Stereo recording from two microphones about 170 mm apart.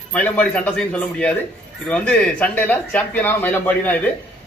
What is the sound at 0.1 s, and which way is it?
A man's voice, 10° left (ahead or behind).